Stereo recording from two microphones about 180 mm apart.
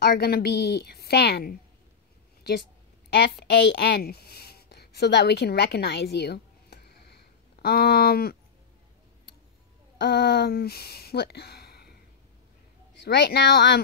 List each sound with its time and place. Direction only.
0.0 s a woman's voice: 60° left (ahead or behind)
3.1 s a woman's voice: 65° left (ahead or behind)
9.9 s speech: 65° left (ahead or behind)
13.0 s a woman's voice: 65° left (ahead or behind)